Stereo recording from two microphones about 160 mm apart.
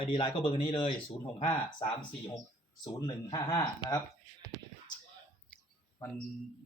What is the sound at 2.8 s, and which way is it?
Speech, 25° left (ahead or behind).